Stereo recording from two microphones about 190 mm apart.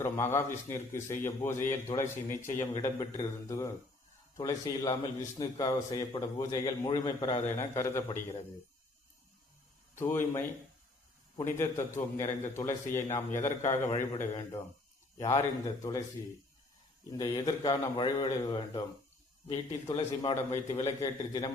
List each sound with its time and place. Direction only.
0.0 s a man's voice: 15° left (ahead or behind)
9.9 s a man's voice: 10° left (ahead or behind)
17.1 s a man's voice: 20° left (ahead or behind)